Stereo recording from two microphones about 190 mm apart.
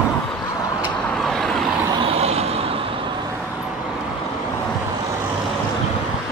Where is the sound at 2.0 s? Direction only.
30° right (ahead or behind).